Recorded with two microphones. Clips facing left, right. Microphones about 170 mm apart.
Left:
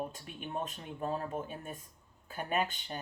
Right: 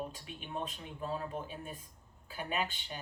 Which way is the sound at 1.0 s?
45° left (ahead or behind).